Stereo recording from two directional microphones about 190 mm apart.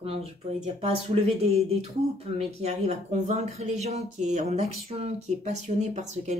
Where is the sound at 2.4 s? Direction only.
35° right (ahead or behind).